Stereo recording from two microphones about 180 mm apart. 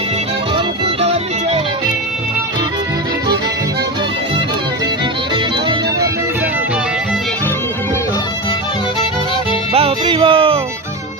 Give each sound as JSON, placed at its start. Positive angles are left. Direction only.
{"t": 1.0, "sound": "music", "side_deg": -35}
{"t": 5.3, "sound": "music", "side_deg": -25}
{"t": 9.7, "sound": "music", "side_deg": -30}